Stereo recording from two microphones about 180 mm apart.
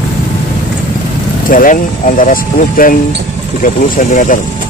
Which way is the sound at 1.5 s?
45° left (ahead or behind).